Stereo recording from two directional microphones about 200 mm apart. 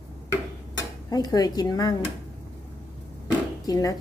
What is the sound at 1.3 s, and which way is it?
Speech, 20° left (ahead or behind).